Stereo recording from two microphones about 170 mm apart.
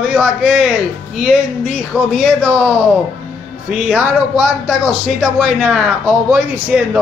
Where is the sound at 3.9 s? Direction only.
5° right (ahead or behind).